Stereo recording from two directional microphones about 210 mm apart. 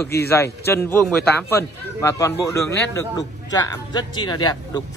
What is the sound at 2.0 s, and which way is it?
A man's voice, 15° left (ahead or behind).